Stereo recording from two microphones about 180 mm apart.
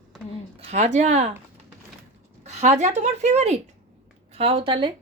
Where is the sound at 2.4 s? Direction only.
40° right (ahead or behind).